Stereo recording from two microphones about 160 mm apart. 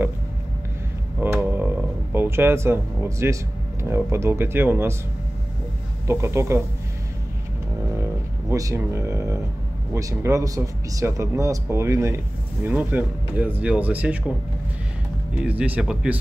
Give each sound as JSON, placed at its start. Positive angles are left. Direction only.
{"t": 1.2, "sound": "a sound", "side_deg": -10}
{"t": 3.8, "sound": "speech", "side_deg": -15}
{"t": 6.0, "sound": "speech", "side_deg": -15}
{"t": 8.5, "sound": "speech", "side_deg": -20}
{"t": 15.4, "sound": "speech", "side_deg": -10}